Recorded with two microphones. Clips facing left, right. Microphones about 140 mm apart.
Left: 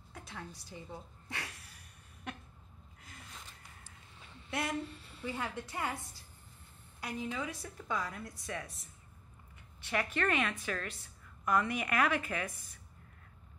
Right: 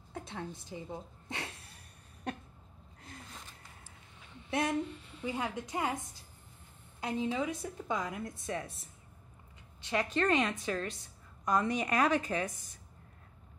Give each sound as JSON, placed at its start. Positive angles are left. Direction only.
{"t": 0.1, "sound": "a sound", "side_deg": -25}
{"t": 0.6, "sound": "a woman's voice", "side_deg": -20}
{"t": 4.5, "sound": "a woman's voice", "side_deg": -20}
{"t": 10.1, "sound": "a woman's voice", "side_deg": -25}